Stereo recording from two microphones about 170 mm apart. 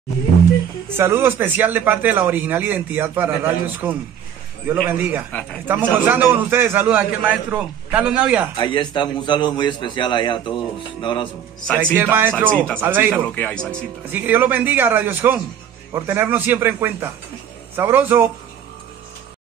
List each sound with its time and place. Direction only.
0.9 s speech: 15° right (ahead or behind)
8.5 s a man's voice: 30° left (ahead or behind)
11.8 s speech: 15° right (ahead or behind)
12.5 s speech: 10° left (ahead or behind)
12.8 s speech: 10° right (ahead or behind)
13.3 s speech: 5° left (ahead or behind)
14.1 s speech: 10° right (ahead or behind)